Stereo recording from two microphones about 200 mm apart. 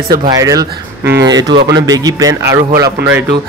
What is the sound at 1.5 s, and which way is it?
Speech, 60° right (ahead or behind).